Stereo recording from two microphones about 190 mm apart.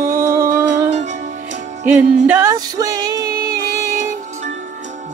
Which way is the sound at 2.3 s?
15° right (ahead or behind).